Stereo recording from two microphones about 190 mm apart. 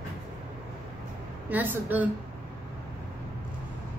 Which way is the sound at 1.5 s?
10° right (ahead or behind).